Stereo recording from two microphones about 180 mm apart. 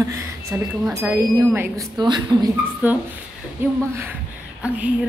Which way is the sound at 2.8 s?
10° right (ahead or behind).